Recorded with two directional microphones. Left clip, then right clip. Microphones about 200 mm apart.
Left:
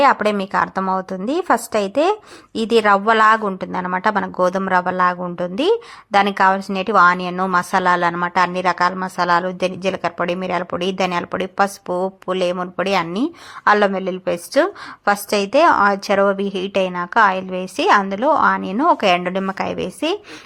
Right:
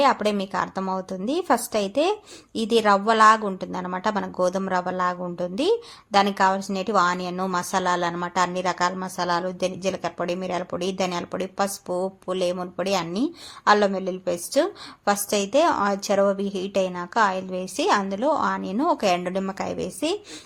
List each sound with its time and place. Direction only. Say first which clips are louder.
0.0 s a woman's voice: left 6 dB; 15° left (ahead or behind)